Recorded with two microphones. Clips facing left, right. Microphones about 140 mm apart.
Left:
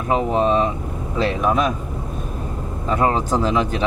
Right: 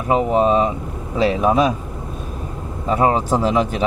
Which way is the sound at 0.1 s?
10° right (ahead or behind).